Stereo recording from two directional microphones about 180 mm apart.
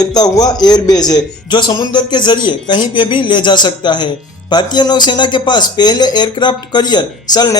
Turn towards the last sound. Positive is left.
turn(degrees=25)  # may be behind; listen again after turning